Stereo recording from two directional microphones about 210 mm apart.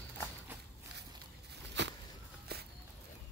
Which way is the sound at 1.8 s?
55° right (ahead or behind).